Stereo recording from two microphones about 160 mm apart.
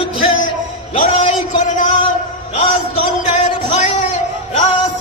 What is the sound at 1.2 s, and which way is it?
Speech, 50° left (ahead or behind).